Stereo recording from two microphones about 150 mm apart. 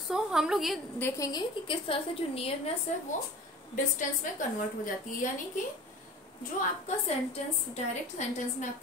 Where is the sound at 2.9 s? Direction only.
50° left (ahead or behind).